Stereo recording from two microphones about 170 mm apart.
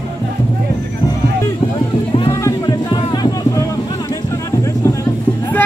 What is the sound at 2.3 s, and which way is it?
Music, 20° left (ahead or behind).